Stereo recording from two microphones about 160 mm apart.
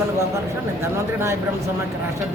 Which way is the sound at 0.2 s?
20° right (ahead or behind).